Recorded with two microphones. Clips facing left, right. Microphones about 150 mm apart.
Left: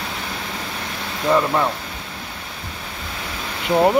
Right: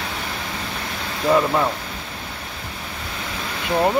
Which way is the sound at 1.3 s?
Centre (ahead or behind).